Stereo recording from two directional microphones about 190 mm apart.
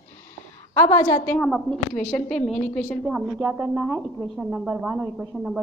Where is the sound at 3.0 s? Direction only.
10° right (ahead or behind).